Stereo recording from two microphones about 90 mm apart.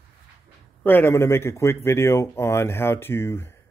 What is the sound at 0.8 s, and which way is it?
Speech, 20° left (ahead or behind).